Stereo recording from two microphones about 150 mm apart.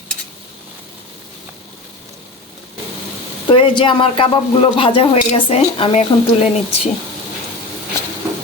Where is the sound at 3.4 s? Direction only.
35° left (ahead or behind).